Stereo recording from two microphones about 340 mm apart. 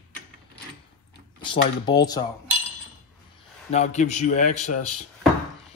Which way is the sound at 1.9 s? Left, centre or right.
Centre.